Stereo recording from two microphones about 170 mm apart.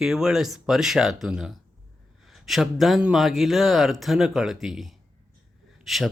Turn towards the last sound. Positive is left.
turn(degrees=0)  # may be behind; listen again after turning